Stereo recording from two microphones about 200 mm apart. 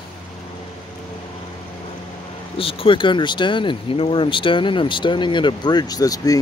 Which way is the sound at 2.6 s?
25° left (ahead or behind).